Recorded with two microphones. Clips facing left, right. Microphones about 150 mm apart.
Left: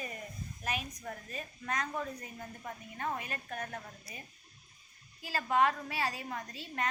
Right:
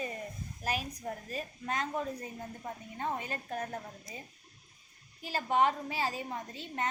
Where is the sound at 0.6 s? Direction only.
35° right (ahead or behind).